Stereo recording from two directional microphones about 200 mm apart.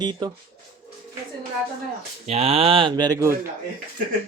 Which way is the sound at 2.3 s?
30° right (ahead or behind).